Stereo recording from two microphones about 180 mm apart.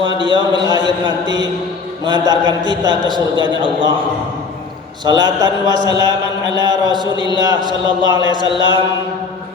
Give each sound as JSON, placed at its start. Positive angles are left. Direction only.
{"t": 0.0, "sound": "a man's voice", "side_deg": -25}
{"t": 5.0, "sound": "a man's voice", "side_deg": -25}
{"t": 8.4, "sound": "chant", "side_deg": 85}